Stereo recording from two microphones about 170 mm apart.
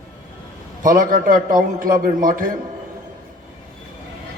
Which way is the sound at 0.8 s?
55° right (ahead or behind).